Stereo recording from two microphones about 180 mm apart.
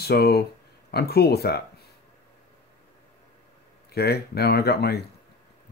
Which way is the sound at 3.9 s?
60° left (ahead or behind).